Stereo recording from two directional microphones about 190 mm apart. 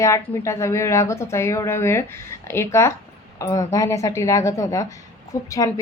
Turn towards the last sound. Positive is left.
turn(degrees=15)  # may be behind; listen again after turning